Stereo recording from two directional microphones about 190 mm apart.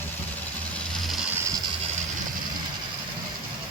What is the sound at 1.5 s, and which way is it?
Vehicle, 20° right (ahead or behind).